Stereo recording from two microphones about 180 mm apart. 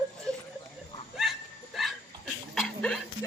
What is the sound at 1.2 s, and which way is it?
Dog, centre (ahead or behind).